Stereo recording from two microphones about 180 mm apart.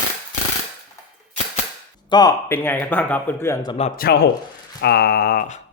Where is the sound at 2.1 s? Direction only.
20° left (ahead or behind).